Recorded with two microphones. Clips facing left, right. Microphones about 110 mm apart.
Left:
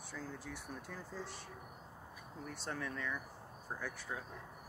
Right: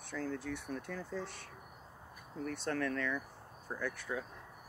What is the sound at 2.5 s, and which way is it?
Speech, 10° left (ahead or behind).